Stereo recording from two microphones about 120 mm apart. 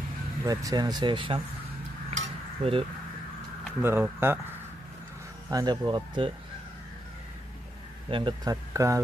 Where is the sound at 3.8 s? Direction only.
20° right (ahead or behind).